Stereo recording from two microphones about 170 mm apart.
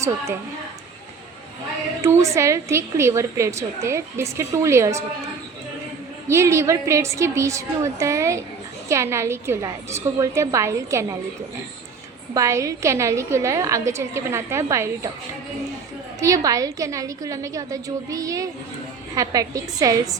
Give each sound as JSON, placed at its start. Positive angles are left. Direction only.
{"t": 2.0, "sound": "a woman's voice", "side_deg": -15}
{"t": 6.2, "sound": "a woman's voice", "side_deg": -15}
{"t": 12.3, "sound": "a woman's voice", "side_deg": -20}
{"t": 16.2, "sound": "a woman's voice", "side_deg": -20}